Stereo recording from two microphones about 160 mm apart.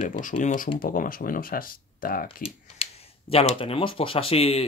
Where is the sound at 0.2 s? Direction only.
50° left (ahead or behind).